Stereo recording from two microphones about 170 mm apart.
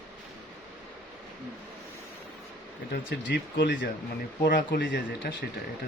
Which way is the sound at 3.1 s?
90° left.